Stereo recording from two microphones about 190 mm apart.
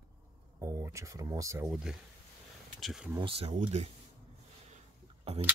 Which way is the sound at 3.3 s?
30° right (ahead or behind).